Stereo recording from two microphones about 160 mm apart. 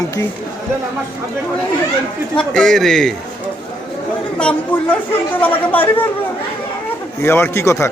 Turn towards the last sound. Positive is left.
turn(degrees=15)  # may be behind; listen again after turning